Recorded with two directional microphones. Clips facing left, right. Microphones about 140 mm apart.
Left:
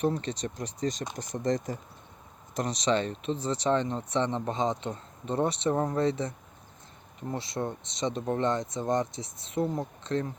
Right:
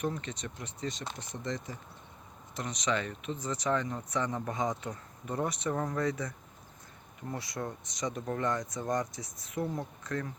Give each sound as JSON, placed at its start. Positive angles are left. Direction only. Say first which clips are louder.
{"t": 0.0, "sound": "speech", "louder": "left 6 dB", "side_deg": 35}